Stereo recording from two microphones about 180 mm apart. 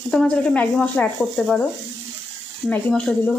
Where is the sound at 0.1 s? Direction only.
5° left (ahead or behind).